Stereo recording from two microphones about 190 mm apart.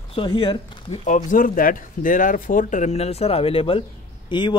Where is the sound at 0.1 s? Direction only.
25° left (ahead or behind).